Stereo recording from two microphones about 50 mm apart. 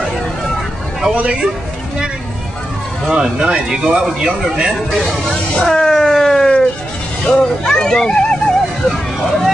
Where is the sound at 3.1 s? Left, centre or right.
Centre.